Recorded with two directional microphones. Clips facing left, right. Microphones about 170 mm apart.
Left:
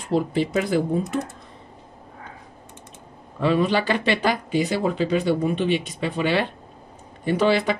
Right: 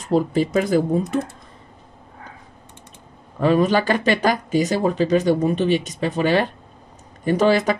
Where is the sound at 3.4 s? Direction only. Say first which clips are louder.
Right 3 dB; 45° right (ahead or behind).